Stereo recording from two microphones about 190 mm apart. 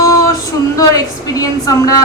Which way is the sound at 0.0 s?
20° left (ahead or behind).